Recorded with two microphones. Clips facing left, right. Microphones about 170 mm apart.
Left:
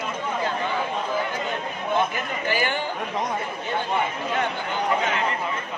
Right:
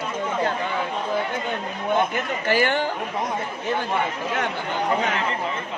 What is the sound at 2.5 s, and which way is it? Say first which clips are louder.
Speech: right 5 dB; 60° right (ahead or behind).